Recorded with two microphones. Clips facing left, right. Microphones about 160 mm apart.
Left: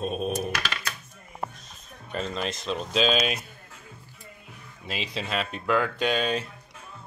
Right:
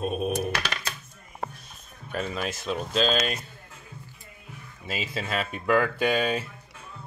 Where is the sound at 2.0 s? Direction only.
5° right (ahead or behind).